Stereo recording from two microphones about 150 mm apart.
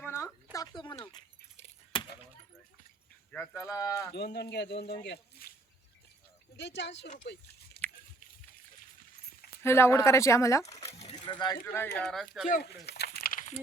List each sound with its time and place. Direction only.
0.0 s a sound: 15° left (ahead or behind)
3.3 s speech: 15° left (ahead or behind)
4.1 s speech: 90° left
7.3 s speech: 90° left
7.8 s a sound: 90° left
9.6 s speech: 15° left (ahead or behind)
11.1 s coin: 30° left (ahead or behind)
11.6 s speech: 15° left (ahead or behind)
11.9 s speech: 5° left (ahead or behind)
12.5 s a sound: 80° left